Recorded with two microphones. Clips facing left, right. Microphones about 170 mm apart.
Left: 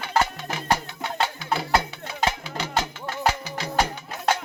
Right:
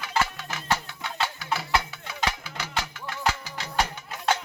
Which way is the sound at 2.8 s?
40° left (ahead or behind).